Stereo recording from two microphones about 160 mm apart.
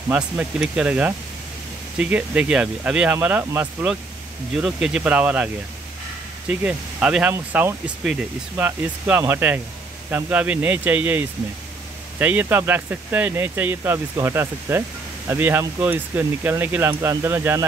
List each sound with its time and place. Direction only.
0.1 s speech: 10° right (ahead or behind)
6.6 s speech: 10° right (ahead or behind)